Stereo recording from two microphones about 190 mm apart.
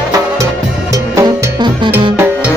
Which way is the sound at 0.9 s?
15° right (ahead or behind).